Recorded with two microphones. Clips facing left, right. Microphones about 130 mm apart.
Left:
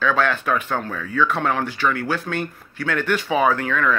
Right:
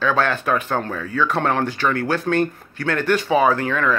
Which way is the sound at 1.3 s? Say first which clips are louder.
Right 2 dB; 35° right (ahead or behind).